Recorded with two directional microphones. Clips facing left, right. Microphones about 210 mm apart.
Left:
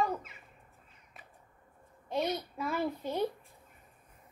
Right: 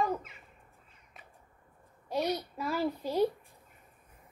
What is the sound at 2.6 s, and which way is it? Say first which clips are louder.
Speech: even; centre (ahead or behind).